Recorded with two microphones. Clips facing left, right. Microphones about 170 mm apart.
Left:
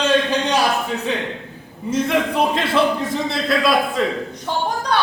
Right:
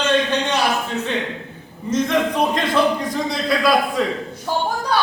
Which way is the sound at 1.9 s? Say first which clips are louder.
Even; 5° left (ahead or behind).